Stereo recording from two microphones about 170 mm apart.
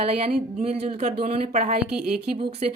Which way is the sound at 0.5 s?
40° right (ahead or behind).